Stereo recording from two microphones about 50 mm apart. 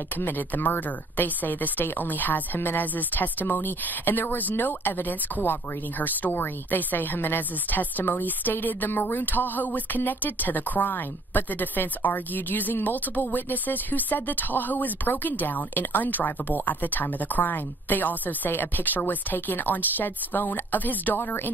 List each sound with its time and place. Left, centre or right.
0.2 s speech: left